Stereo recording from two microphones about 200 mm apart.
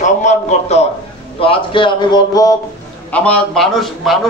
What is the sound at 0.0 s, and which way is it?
A man's voice, 35° left (ahead or behind).